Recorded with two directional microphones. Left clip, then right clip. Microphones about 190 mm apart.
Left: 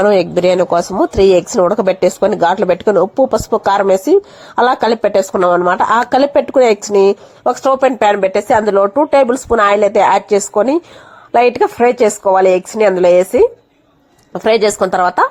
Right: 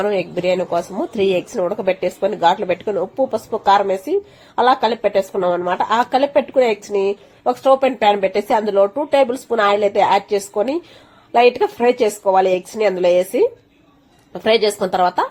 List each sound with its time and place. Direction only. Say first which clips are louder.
0.0 s speech: left 8 dB; 45° left (ahead or behind)